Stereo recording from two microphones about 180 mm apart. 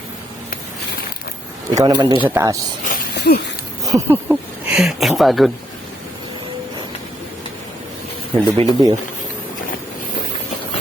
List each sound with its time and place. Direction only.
1.7 s speech: 20° right (ahead or behind)
2.8 s a sound: 50° left (ahead or behind)
3.8 s speech: 15° right (ahead or behind)
8.5 s speech: 20° right (ahead or behind)